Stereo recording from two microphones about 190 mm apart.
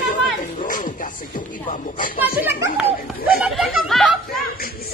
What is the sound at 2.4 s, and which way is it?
A child's voice, 10° right (ahead or behind).